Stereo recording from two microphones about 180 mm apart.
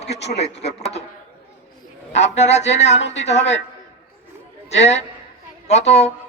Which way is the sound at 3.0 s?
80° left.